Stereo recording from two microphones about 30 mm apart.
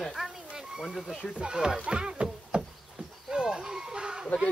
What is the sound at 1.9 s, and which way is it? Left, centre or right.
Music, right.